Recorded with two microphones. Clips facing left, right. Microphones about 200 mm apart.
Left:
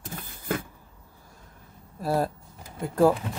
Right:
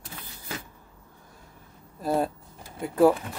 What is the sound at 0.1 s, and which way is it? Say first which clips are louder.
Power windows: left 9 dB; 50° left (ahead or behind).